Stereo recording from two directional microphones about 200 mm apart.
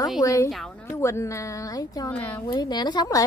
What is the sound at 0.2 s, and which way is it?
A woman's voice, 15° left (ahead or behind).